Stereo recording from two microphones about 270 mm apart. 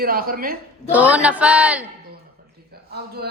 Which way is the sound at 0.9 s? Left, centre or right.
Centre.